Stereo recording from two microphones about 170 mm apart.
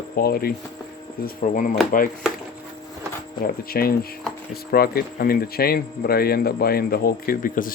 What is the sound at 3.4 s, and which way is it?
Speech, 60° left (ahead or behind).